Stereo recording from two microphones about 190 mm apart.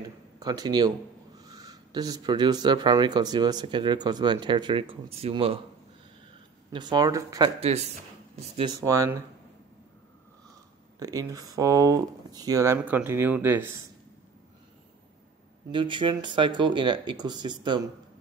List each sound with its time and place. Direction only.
0.4 s speech: 20° right (ahead or behind)
6.7 s speech: 25° right (ahead or behind)
7.6 s a man's voice: 35° right (ahead or behind)
8.5 s speech: 20° right (ahead or behind)
11.0 s speech: 20° right (ahead or behind)
15.7 s speech: 25° right (ahead or behind)